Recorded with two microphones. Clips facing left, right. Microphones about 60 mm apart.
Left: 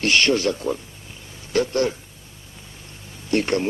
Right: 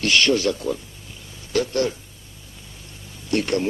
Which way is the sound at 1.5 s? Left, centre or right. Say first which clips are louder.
Left 1 dB; left.